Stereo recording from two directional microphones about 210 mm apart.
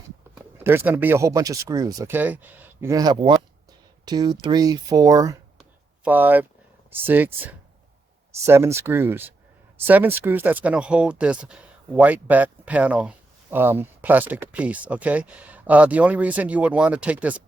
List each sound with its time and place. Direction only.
0.5 s speech: 10° right (ahead or behind)
8.4 s speech: 10° right (ahead or behind)